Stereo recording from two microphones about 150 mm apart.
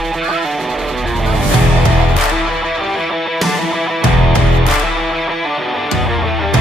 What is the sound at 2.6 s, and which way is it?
Music, centre (ahead or behind).